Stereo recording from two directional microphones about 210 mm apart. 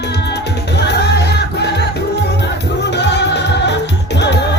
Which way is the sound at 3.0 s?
55° left (ahead or behind).